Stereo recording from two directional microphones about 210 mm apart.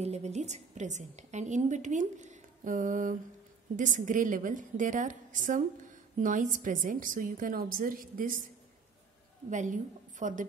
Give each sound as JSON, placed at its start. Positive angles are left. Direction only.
{"t": 0.0, "sound": "a woman's voice", "side_deg": -30}
{"t": 9.5, "sound": "a woman's voice", "side_deg": -35}